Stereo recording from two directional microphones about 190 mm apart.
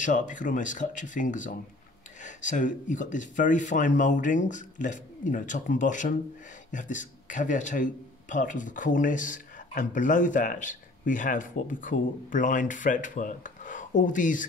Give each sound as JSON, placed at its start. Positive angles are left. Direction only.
{"t": 0.0, "sound": "a man's voice", "side_deg": 40}